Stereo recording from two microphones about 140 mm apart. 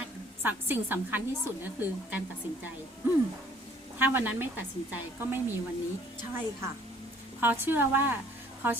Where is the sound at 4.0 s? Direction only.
15° right (ahead or behind).